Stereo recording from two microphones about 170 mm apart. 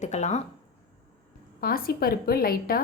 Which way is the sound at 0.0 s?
45° left (ahead or behind).